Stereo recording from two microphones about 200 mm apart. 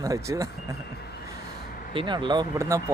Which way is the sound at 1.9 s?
25° right (ahead or behind).